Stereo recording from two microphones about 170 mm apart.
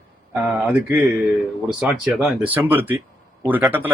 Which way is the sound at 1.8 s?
Centre (ahead or behind).